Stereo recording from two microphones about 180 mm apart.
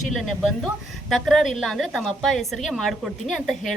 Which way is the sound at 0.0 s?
Centre (ahead or behind).